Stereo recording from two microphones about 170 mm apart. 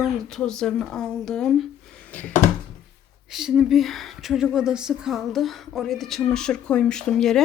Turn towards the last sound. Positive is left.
turn(degrees=0)  # may be behind; listen again after turning